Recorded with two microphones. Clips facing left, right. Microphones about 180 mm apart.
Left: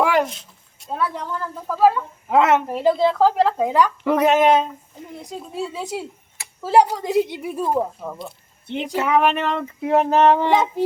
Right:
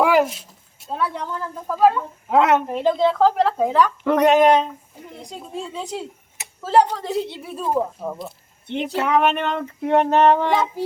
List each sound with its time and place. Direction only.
0.0 s a sound: 5° right (ahead or behind)
1.6 s a woman's voice: centre (ahead or behind)
8.0 s speech: centre (ahead or behind)
10.4 s child singing: 20° left (ahead or behind)